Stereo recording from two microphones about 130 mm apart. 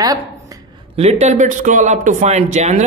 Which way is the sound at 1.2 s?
70° right (ahead or behind).